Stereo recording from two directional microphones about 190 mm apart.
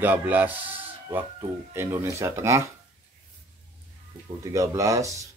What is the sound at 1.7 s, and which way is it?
Speech, 15° right (ahead or behind).